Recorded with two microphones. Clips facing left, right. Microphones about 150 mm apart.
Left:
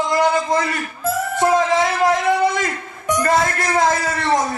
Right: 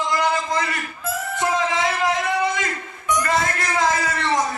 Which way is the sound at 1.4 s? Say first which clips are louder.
Left 5 dB; 40° left (ahead or behind).